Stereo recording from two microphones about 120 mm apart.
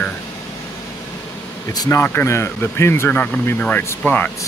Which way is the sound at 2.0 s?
20° left (ahead or behind).